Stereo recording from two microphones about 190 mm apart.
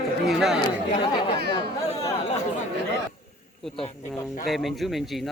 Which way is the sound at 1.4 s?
60° right (ahead or behind).